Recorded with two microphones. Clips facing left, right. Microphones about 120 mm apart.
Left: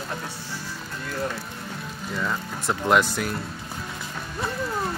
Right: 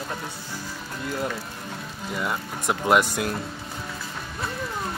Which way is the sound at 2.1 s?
15° right (ahead or behind).